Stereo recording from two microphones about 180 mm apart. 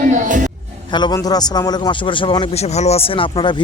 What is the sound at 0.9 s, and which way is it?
Speech, 20° left (ahead or behind).